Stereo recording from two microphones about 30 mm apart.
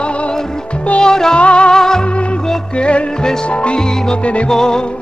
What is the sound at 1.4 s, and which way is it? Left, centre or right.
Music, left.